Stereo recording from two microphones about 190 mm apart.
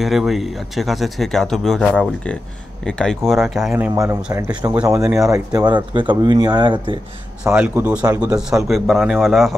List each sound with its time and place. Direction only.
0.0 s speech: centre (ahead or behind); by 7.0 s 25° right (ahead or behind)
7.4 s speech: 10° right (ahead or behind)